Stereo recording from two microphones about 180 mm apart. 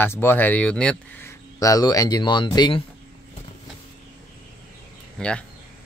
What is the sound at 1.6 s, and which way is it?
Speech, 20° left (ahead or behind).